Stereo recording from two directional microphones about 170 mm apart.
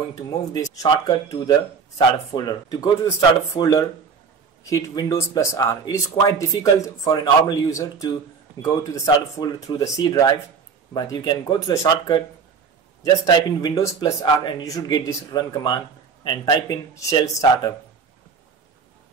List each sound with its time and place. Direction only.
0.5 s speech: 25° left (ahead or behind)